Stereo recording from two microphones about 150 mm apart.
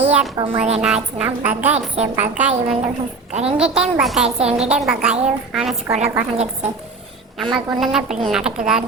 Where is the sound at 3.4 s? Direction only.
40° right (ahead or behind).